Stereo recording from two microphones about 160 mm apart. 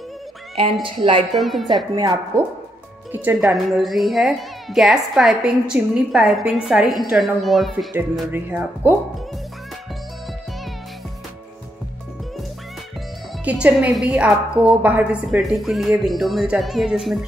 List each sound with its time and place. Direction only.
0.8 s a woman's voice: 30° right (ahead or behind)
1.3 s a woman's voice: centre (ahead or behind)
2.0 s a woman's voice: 20° right (ahead or behind)
3.5 s a woman's voice: centre (ahead or behind)
7.9 s speech: 15° right (ahead or behind)
13.4 s a woman's voice: 10° right (ahead or behind)